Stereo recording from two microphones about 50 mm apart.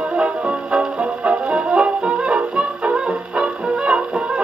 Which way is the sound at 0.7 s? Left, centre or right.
Centre.